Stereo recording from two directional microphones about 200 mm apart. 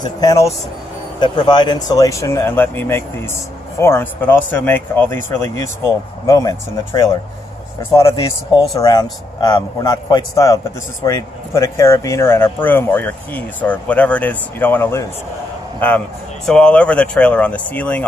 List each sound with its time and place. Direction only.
0.0 s a man's voice: 20° left (ahead or behind)
16.4 s speech: 5° left (ahead or behind)